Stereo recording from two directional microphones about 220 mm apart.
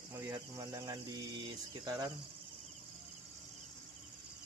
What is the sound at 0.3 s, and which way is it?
Speech, 15° right (ahead or behind).